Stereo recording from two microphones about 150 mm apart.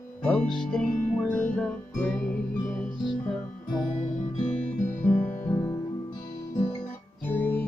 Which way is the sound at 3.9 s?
55° left (ahead or behind).